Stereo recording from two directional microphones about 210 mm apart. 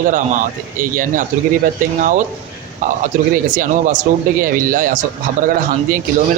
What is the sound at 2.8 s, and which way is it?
A man's voice, 35° right (ahead or behind).